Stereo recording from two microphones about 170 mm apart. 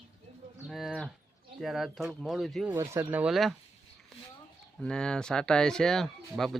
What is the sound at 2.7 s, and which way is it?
Speech, 15° right (ahead or behind).